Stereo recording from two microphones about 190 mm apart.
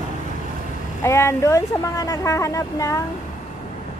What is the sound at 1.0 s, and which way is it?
Speech, 15° left (ahead or behind).